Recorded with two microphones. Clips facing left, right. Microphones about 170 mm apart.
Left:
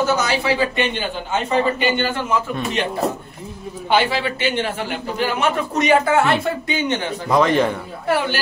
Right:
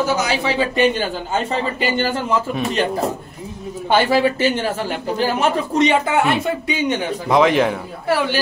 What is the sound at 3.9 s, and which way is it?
A man's voice, 45° right (ahead or behind).